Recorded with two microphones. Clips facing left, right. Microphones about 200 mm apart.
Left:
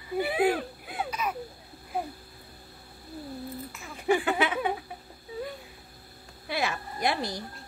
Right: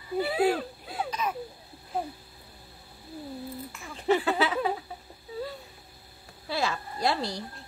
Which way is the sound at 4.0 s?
15° left (ahead or behind).